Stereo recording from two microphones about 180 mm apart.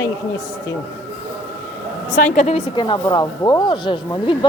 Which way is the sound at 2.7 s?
25° left (ahead or behind).